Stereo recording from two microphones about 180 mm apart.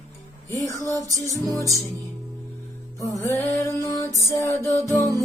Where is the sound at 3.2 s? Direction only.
15° left (ahead or behind).